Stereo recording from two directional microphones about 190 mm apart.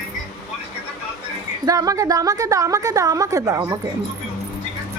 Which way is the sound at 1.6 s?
20° right (ahead or behind).